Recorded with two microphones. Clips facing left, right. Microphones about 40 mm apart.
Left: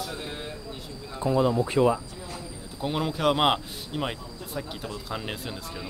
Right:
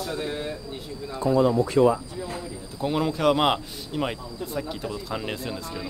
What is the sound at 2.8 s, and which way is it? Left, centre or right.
A man's voice, centre.